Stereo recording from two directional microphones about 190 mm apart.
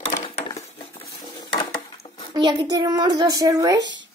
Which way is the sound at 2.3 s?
25° right (ahead or behind).